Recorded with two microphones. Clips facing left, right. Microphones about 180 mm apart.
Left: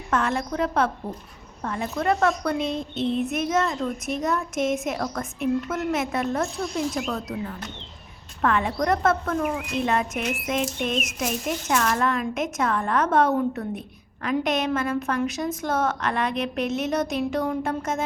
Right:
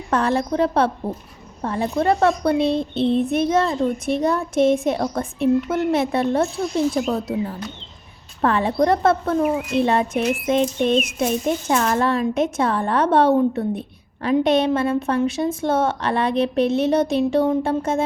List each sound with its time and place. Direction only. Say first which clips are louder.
0.1 s a woman's voice: right 5 dB; 35° right (ahead or behind)